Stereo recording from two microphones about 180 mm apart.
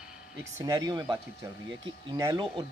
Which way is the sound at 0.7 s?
20° right (ahead or behind).